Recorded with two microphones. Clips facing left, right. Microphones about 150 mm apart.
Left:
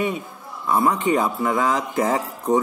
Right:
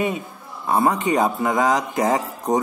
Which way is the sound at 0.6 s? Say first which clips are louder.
Even; 45° right (ahead or behind).